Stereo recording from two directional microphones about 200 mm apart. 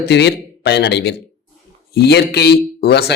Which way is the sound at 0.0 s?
60° left (ahead or behind).